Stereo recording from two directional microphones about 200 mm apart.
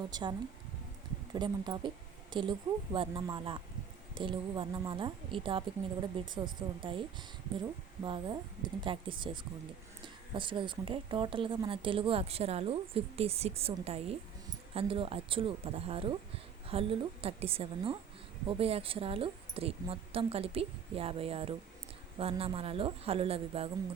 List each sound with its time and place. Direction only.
0.1 s speech: 20° right (ahead or behind)